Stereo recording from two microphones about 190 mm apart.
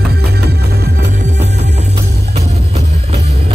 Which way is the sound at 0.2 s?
55° right (ahead or behind).